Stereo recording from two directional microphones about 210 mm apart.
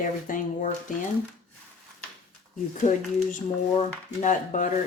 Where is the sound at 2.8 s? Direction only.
35° left (ahead or behind).